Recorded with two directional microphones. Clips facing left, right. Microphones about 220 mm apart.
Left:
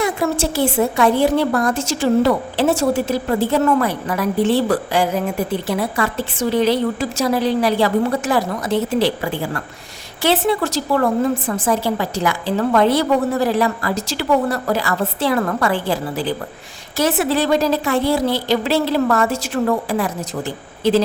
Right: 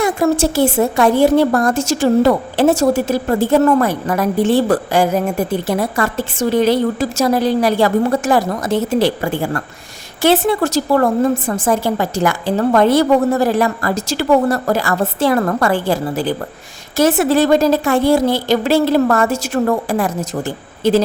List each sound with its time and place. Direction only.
0.0 s a woman's voice: 45° right (ahead or behind)